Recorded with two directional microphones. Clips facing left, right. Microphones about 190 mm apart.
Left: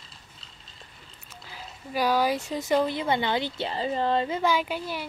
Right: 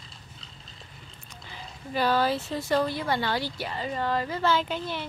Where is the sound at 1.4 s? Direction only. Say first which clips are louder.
Right 1 dB; 5° left (ahead or behind).